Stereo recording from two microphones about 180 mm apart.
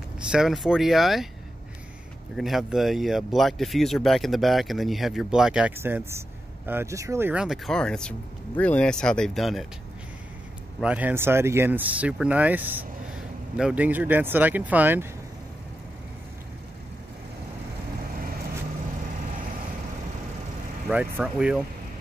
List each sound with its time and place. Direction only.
0.3 s speech: centre (ahead or behind)
2.3 s speech: centre (ahead or behind)
10.8 s speech: 10° right (ahead or behind)
20.9 s speech: 5° right (ahead or behind)